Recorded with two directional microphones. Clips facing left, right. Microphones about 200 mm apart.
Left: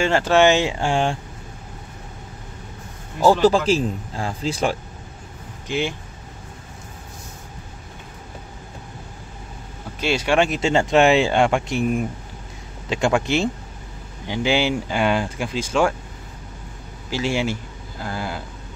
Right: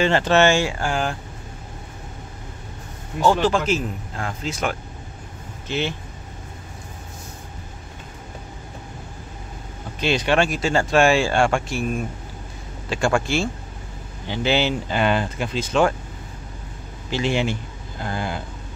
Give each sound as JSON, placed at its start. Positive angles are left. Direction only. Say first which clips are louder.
{"t": 0.0, "sound": "speech", "louder": "left 1 dB", "side_deg": 10}
{"t": 3.3, "sound": "speech", "louder": "left 3 dB", "side_deg": 35}
{"t": 5.7, "sound": "speech", "louder": "left 1 dB", "side_deg": 10}
{"t": 9.9, "sound": "speech", "louder": "left 1 dB", "side_deg": 10}
{"t": 17.1, "sound": "speech", "louder": "even", "side_deg": 10}